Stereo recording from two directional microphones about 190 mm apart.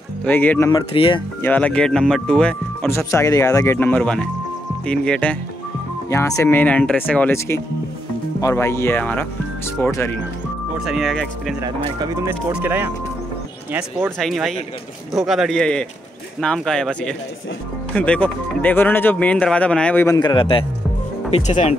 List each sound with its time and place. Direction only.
0.2 s speech: 10° left (ahead or behind)
0.7 s speech: 25° left (ahead or behind)
1.4 s speech: 10° left (ahead or behind)
10.9 s speech: centre (ahead or behind)
11.6 s speech: 20° right (ahead or behind)
14.1 s speech: centre (ahead or behind)
20.2 s speech: 25° left (ahead or behind)
21.4 s speech: 40° left (ahead or behind)